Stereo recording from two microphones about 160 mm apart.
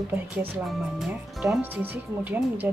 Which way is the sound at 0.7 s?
Centre (ahead or behind).